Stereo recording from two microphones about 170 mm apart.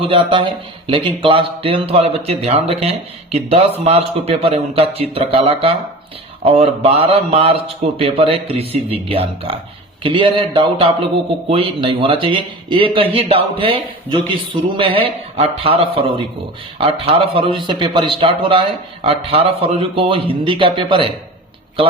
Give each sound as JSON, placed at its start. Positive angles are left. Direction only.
{"t": 0.0, "sound": "speech", "side_deg": -30}